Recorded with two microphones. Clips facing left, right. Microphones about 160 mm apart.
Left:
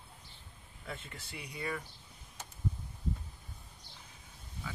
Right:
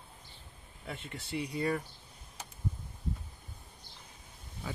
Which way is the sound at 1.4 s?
35° right (ahead or behind).